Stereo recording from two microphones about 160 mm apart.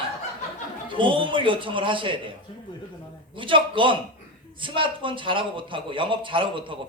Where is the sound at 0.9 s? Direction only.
30° right (ahead or behind).